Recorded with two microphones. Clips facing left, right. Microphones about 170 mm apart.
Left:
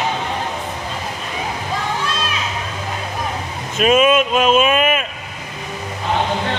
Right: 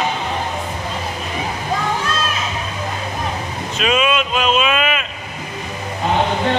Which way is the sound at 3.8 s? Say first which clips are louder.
Left 5 dB; 50° left (ahead or behind).